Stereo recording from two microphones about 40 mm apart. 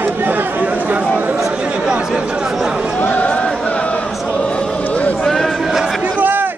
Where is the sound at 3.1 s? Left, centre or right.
Left.